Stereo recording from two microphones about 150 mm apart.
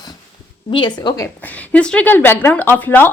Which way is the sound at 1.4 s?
10° left (ahead or behind).